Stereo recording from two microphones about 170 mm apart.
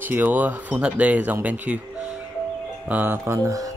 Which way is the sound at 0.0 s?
10° right (ahead or behind).